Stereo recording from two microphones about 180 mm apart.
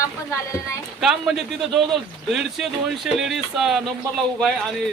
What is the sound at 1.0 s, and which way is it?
A man's voice, centre (ahead or behind).